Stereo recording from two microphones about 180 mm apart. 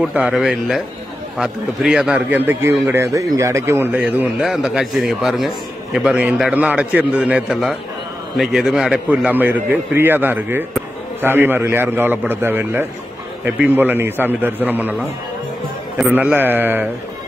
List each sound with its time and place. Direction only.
0.0 s a man's voice: 5° right (ahead or behind)
16.1 s a man's voice: 10° right (ahead or behind)